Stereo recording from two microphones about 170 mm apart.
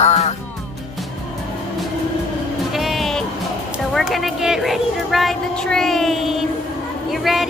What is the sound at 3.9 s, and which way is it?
A woman's voice, centre (ahead or behind).